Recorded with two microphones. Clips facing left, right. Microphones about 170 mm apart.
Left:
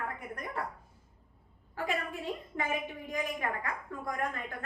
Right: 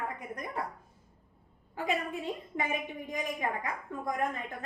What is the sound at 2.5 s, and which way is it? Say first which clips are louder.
A woman's voice: right 1 dB; 20° right (ahead or behind).